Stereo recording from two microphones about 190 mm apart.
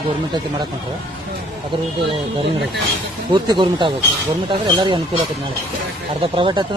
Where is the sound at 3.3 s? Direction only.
25° right (ahead or behind).